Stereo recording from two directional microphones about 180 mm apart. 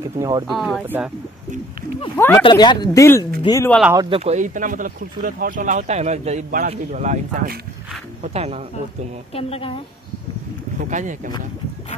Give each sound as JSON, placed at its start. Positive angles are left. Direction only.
{"t": 0.2, "sound": "speech", "side_deg": -20}
{"t": 0.5, "sound": "speech", "side_deg": 0}
{"t": 0.8, "sound": "speech", "side_deg": -10}
{"t": 2.1, "sound": "speech", "side_deg": 15}
{"t": 2.4, "sound": "speech", "side_deg": 25}
{"t": 3.9, "sound": "speech", "side_deg": -20}
{"t": 4.2, "sound": "speech", "side_deg": -40}
{"t": 9.3, "sound": "a woman's voice", "side_deg": 35}
{"t": 10.8, "sound": "speech", "side_deg": -45}